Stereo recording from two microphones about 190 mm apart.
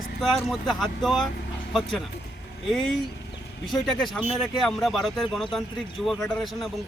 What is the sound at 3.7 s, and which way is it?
Speech, centre (ahead or behind).